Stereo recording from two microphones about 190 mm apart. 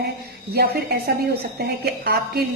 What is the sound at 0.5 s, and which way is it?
A woman's voice, 55° right (ahead or behind).